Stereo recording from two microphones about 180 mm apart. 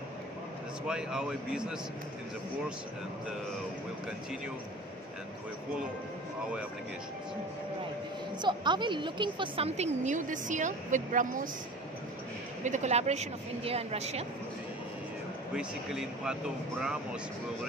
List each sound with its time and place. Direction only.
0.8 s a man's voice: 5° right (ahead or behind)
8.4 s a woman's voice: 25° right (ahead or behind); by 11.4 s 45° right (ahead or behind)
12.6 s a woman's voice: 40° right (ahead or behind)
15.5 s a man's voice: 5° right (ahead or behind)